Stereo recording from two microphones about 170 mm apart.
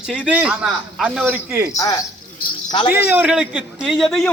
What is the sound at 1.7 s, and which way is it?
Speech, 20° left (ahead or behind).